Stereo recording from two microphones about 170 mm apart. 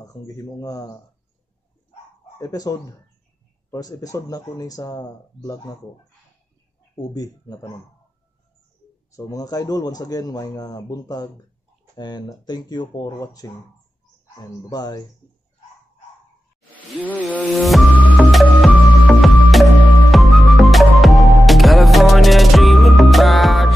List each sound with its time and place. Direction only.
0.0 s speech: 20° left (ahead or behind)
2.3 s speech: 20° left (ahead or behind)
7.0 s speech: 20° left (ahead or behind)
9.1 s speech: 20° left (ahead or behind)
17.4 s music: centre (ahead or behind)